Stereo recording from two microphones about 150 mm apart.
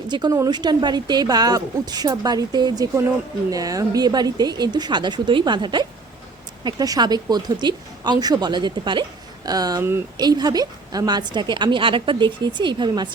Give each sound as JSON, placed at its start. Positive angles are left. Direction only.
{"t": 0.1, "sound": "a woman's voice", "side_deg": -25}